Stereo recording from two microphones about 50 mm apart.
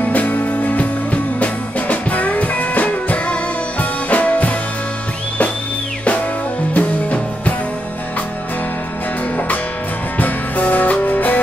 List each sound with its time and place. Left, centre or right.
0.0 s music: left
6.7 s music: left
10.1 s music: left